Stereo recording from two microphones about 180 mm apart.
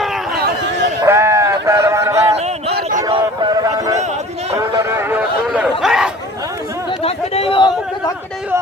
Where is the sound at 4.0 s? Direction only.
40° right (ahead or behind).